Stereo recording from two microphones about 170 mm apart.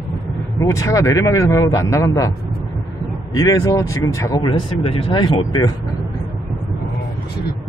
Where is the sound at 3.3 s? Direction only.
20° left (ahead or behind).